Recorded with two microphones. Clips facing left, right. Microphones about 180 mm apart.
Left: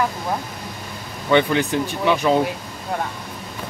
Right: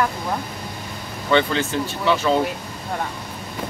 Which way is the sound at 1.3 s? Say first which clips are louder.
Left 2 dB; 15° left (ahead or behind).